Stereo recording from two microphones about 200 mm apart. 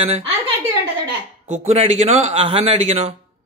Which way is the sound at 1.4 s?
35° right (ahead or behind).